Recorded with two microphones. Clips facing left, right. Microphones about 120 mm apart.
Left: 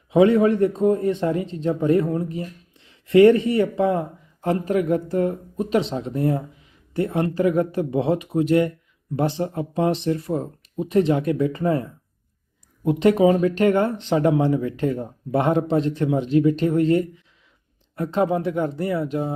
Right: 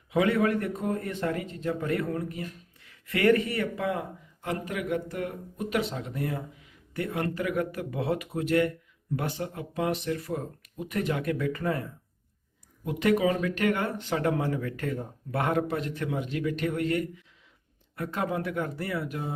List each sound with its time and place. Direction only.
0.1 s a man's voice: 25° left (ahead or behind)